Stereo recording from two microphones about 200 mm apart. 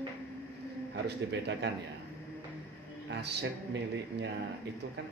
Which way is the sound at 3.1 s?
60° right (ahead or behind).